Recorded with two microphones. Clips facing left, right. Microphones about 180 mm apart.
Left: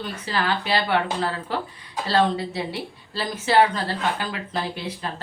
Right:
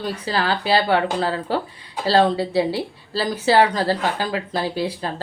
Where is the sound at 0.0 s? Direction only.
35° right (ahead or behind).